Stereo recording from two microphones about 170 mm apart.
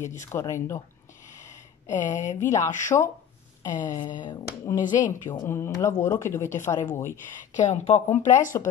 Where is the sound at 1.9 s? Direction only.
45° left (ahead or behind).